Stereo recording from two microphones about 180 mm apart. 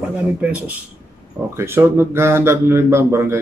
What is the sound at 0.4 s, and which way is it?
Speech, 5° right (ahead or behind).